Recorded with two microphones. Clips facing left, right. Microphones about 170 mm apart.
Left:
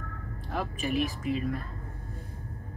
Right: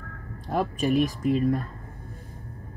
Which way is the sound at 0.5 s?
40° right (ahead or behind).